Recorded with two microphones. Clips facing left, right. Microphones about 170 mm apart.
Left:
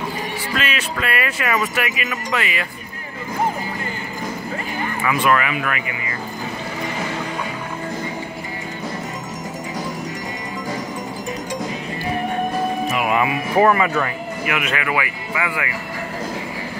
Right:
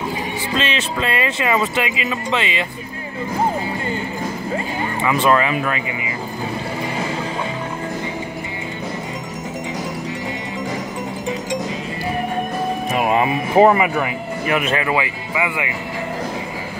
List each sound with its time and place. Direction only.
0.6 s speech: 25° right (ahead or behind)
5.0 s speech: 25° right (ahead or behind)
12.9 s speech: 30° right (ahead or behind); by 14.1 s 15° right (ahead or behind)
14.4 s speech: 30° right (ahead or behind)